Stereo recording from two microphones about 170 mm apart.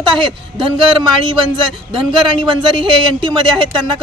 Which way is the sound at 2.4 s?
30° right (ahead or behind).